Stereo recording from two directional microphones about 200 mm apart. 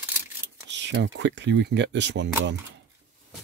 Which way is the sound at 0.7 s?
60° right (ahead or behind).